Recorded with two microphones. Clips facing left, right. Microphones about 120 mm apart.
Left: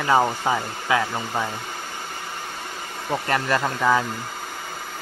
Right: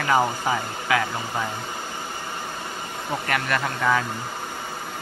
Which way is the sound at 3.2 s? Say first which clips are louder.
Left 3 dB; 30° left (ahead or behind).